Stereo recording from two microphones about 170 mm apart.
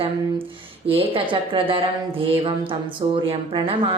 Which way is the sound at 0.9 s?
35° right (ahead or behind).